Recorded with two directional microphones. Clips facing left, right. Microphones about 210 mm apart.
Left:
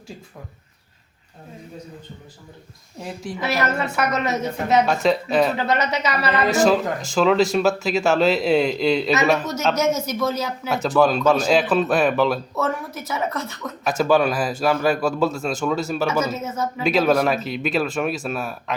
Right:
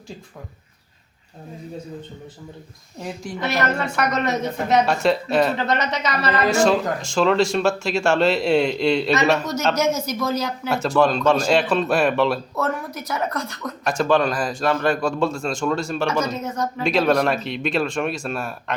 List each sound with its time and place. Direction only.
3.0 s a man's voice: 5° left (ahead or behind)